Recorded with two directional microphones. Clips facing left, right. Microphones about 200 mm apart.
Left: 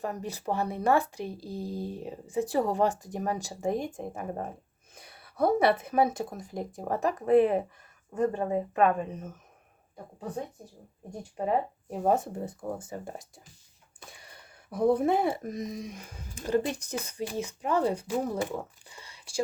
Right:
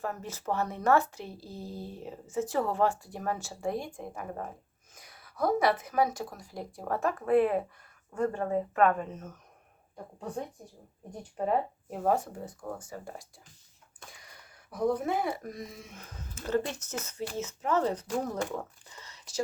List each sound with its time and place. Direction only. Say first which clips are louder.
0.0 s a woman's voice: left 2 dB; 15° left (ahead or behind)